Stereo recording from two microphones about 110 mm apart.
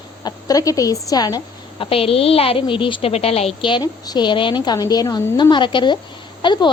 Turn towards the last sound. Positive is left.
turn(degrees=45)  # may be behind; listen again after turning